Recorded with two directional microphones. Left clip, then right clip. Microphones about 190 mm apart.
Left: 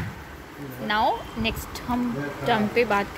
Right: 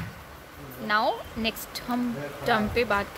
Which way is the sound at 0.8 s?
15° right (ahead or behind).